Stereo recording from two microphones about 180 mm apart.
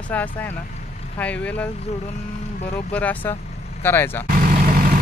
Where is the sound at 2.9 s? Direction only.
10° left (ahead or behind).